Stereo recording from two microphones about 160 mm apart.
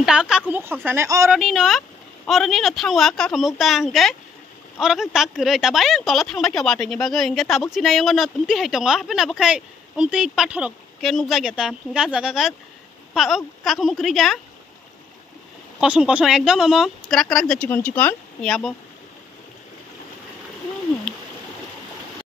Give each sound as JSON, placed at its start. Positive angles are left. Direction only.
{"t": 0.0, "sound": "speech", "side_deg": -5}
{"t": 1.3, "sound": "a woman's voice", "side_deg": 0}
{"t": 15.8, "sound": "speech", "side_deg": -5}